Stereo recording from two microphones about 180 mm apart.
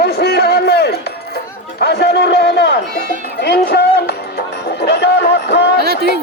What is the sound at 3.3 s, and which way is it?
Music, 65° left (ahead or behind).